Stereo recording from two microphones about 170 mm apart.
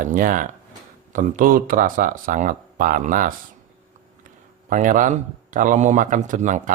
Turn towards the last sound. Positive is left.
turn(degrees=-50)  # may be behind; listen again after turning